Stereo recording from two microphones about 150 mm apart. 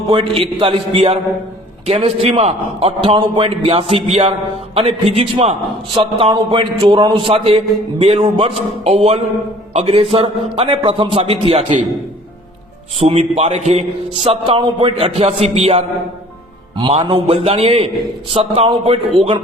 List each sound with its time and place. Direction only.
0.1 s a man's voice: 35° right (ahead or behind)
13.0 s a man's voice: 40° right (ahead or behind)